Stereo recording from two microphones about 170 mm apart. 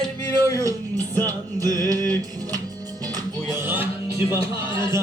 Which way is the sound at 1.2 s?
20° right (ahead or behind).